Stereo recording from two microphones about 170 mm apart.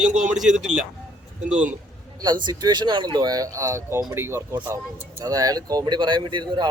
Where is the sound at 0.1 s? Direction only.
45° right (ahead or behind).